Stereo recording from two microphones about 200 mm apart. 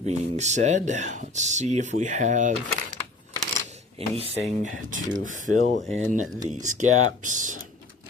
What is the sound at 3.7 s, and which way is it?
Speech, 30° right (ahead or behind).